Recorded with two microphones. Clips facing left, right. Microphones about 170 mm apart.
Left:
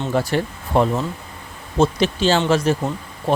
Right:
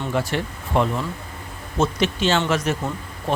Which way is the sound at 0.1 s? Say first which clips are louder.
Left 4 dB; 35° left (ahead or behind).